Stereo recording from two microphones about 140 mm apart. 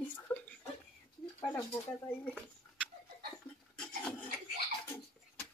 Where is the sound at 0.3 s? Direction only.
10° left (ahead or behind).